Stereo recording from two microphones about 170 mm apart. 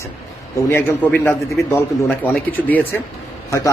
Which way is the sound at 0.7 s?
15° left (ahead or behind).